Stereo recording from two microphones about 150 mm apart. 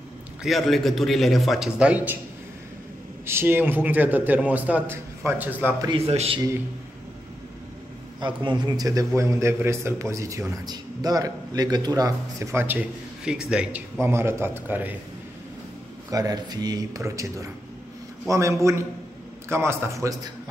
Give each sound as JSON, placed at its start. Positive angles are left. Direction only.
{"t": 0.4, "sound": "a man's voice", "side_deg": 0}
{"t": 3.3, "sound": "a man's voice", "side_deg": -15}
{"t": 5.9, "sound": "a man's voice", "side_deg": -40}
{"t": 8.2, "sound": "a man's voice", "side_deg": -30}
{"t": 16.1, "sound": "a man's voice", "side_deg": -25}